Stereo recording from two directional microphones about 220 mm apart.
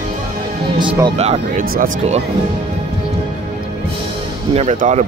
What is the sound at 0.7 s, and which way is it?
Speech, 20° right (ahead or behind).